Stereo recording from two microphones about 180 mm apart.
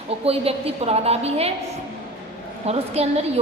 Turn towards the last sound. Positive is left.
turn(degrees=-35)  # may be behind; listen again after turning